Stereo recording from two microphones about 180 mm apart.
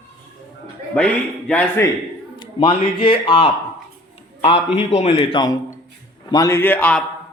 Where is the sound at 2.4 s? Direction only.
30° left (ahead or behind).